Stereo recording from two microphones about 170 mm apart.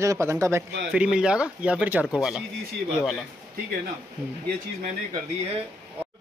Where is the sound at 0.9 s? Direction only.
5° right (ahead or behind).